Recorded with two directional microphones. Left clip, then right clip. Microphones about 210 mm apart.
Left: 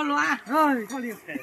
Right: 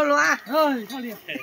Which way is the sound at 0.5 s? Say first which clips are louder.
Right 1 dB; 60° right (ahead or behind).